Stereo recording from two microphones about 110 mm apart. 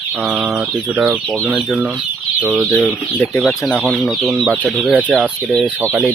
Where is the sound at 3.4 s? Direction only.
Centre (ahead or behind).